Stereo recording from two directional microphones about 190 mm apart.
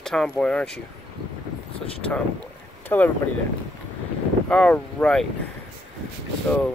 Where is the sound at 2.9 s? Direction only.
10° left (ahead or behind).